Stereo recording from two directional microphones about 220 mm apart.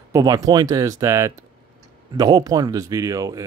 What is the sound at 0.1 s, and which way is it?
Speech, 15° right (ahead or behind).